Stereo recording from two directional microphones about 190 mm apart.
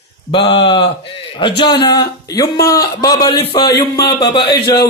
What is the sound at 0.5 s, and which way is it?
A man's voice, 30° left (ahead or behind).